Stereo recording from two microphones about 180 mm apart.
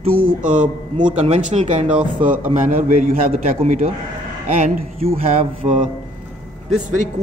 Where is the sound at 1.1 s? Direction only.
40° right (ahead or behind).